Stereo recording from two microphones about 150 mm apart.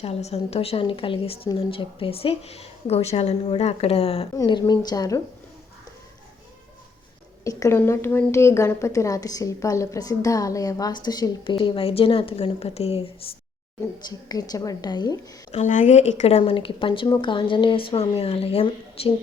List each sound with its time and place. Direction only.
0.0 s speech: 45° left (ahead or behind)
4.4 s a woman's voice: 25° left (ahead or behind)
7.4 s a woman's voice: 20° left (ahead or behind); by 13.1 s 40° left (ahead or behind)
14.1 s a woman's voice: 25° left (ahead or behind)
15.5 s speech: 55° left (ahead or behind); by 19.1 s 40° left (ahead or behind)